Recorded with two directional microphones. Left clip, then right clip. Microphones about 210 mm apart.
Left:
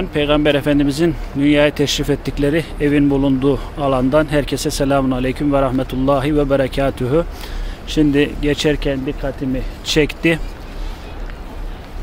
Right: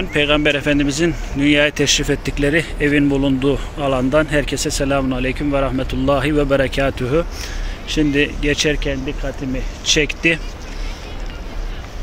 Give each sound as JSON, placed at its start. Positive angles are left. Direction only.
{"t": 0.0, "sound": "speech", "side_deg": 10}